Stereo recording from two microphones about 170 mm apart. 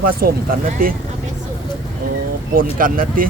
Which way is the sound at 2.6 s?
55° right (ahead or behind).